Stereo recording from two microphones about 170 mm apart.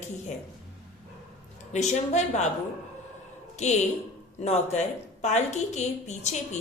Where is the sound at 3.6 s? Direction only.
40° left (ahead or behind).